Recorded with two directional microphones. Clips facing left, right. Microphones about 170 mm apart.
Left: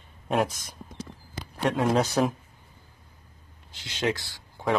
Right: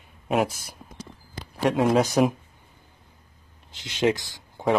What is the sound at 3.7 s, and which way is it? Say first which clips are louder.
Speech: right 5 dB; 20° right (ahead or behind).